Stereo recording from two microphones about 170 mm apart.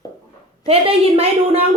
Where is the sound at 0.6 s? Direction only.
35° right (ahead or behind).